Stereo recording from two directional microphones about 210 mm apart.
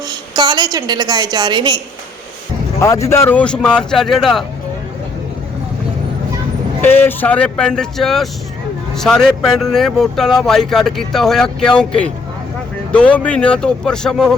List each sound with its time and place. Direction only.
0.3 s a woman's voice: 20° right (ahead or behind)
2.8 s speech: 15° left (ahead or behind)
6.8 s speech: 10° left (ahead or behind)